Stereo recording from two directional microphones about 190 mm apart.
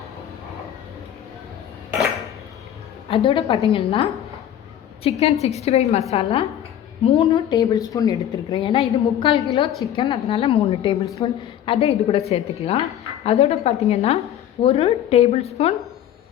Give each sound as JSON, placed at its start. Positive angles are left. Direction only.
{"t": 3.1, "sound": "a woman's voice", "side_deg": 30}
{"t": 7.3, "sound": "a woman's voice", "side_deg": 20}